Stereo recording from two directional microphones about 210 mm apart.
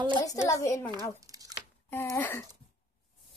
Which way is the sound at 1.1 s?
15° right (ahead or behind).